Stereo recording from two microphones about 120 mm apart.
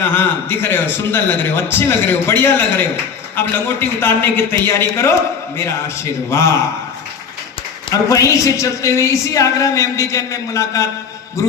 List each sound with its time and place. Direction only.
0.0 s speech: 20° left (ahead or behind)
7.9 s speech: 30° left (ahead or behind)